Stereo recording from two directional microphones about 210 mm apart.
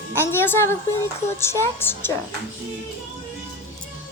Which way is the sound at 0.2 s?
10° left (ahead or behind).